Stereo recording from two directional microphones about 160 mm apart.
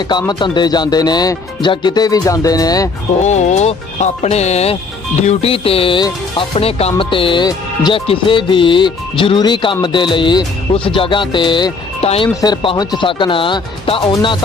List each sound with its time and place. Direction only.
0.1 s speech: 25° left (ahead or behind)
3.2 s speech: 45° left (ahead or behind)
5.2 s music: 40° left (ahead or behind)
9.8 s speech: 30° left (ahead or behind)
10.9 s music: 30° left (ahead or behind)
12.4 s speech: 25° left (ahead or behind)